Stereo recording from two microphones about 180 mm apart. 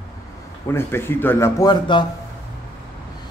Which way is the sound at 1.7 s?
25° left (ahead or behind).